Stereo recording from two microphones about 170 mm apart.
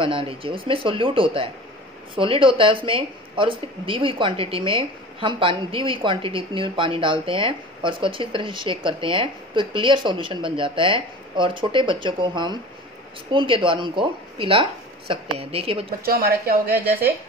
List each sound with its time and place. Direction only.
0.0 s speech: 30° right (ahead or behind)
16.1 s a woman's voice: 60° right (ahead or behind)